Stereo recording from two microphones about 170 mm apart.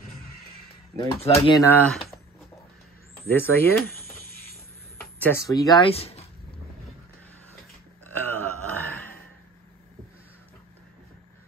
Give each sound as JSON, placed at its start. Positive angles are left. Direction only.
{"t": 1.2, "sound": "speech", "side_deg": 35}
{"t": 1.6, "sound": "speech", "side_deg": 10}
{"t": 3.3, "sound": "speech", "side_deg": 10}
{"t": 5.9, "sound": "speech", "side_deg": 35}
{"t": 8.1, "sound": "burping", "side_deg": 10}